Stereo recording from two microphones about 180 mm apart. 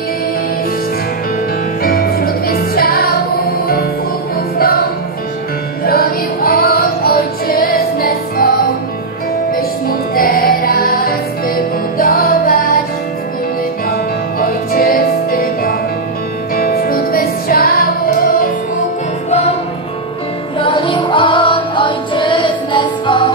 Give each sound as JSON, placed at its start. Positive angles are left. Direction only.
{"t": 1.8, "sound": "music", "side_deg": 55}
{"t": 5.9, "sound": "music", "side_deg": 55}
{"t": 14.4, "sound": "music", "side_deg": 55}
{"t": 20.5, "sound": "music", "side_deg": 25}